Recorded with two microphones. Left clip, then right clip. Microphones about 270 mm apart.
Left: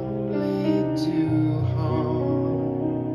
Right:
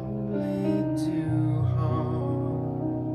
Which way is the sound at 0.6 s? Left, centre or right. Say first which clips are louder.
Left 3 dB; left.